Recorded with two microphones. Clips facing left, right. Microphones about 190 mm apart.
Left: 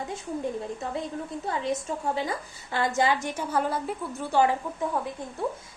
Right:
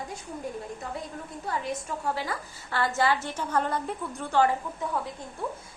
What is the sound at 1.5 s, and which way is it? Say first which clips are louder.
A woman's voice: left 2 dB; 20° left (ahead or behind).